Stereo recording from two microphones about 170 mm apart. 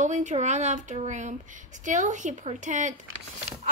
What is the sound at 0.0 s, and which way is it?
A woman's voice, 45° right (ahead or behind).